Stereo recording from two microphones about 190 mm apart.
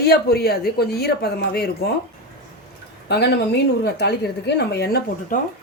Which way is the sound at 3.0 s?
65° left (ahead or behind).